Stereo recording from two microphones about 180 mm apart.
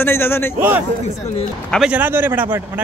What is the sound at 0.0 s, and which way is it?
Speech, 15° left (ahead or behind).